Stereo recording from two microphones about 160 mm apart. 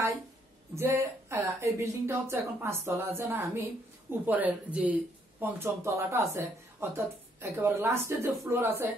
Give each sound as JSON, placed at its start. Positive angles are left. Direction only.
{"t": 0.7, "sound": "speech", "side_deg": -15}